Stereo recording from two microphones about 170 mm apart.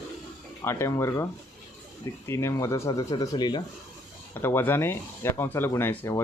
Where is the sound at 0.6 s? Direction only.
15° left (ahead or behind).